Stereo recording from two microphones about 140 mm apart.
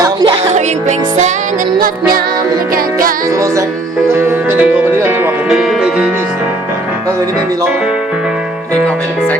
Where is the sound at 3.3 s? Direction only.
25° right (ahead or behind).